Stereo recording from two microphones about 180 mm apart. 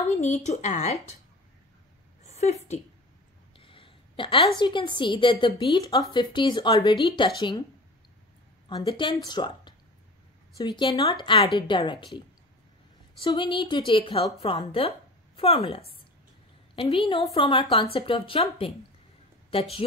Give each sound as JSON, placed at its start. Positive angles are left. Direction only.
{"t": 0.2, "sound": "speech", "side_deg": 40}
{"t": 2.2, "sound": "a woman's voice", "side_deg": 40}
{"t": 8.6, "sound": "a woman's voice", "side_deg": 25}
{"t": 13.2, "sound": "a woman's voice", "side_deg": 25}